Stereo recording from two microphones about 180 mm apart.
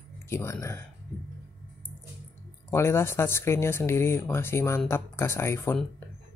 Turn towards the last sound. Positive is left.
turn(degrees=15)  # may be behind; listen again after turning